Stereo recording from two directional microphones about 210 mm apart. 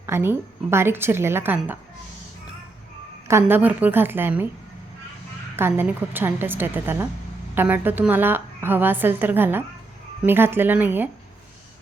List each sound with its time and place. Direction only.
0.0 s a woman's voice: 10° right (ahead or behind)
3.2 s a woman's voice: 10° right (ahead or behind)
5.5 s a woman's voice: 10° right (ahead or behind)